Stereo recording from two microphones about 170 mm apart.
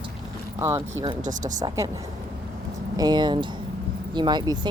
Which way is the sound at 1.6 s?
20° right (ahead or behind).